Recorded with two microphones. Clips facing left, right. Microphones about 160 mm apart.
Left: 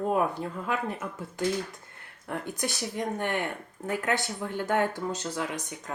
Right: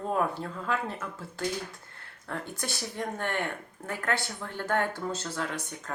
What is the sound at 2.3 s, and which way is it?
Speech, 15° left (ahead or behind).